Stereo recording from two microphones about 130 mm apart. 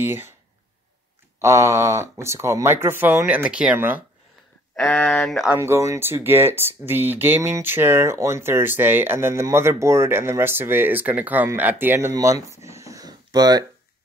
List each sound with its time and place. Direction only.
0.0 s speech: 15° right (ahead or behind)
1.4 s speech: 20° right (ahead or behind)
4.7 s speech: 10° left (ahead or behind)
5.6 s speech: 20° right (ahead or behind)